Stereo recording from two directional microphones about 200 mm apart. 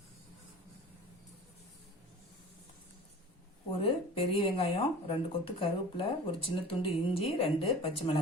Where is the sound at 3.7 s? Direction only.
30° left (ahead or behind).